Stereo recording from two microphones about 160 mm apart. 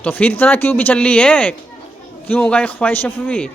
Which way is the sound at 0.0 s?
10° left (ahead or behind).